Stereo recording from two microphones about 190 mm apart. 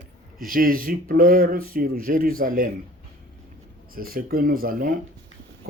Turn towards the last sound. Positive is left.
turn(degrees=-50)  # may be behind; listen again after turning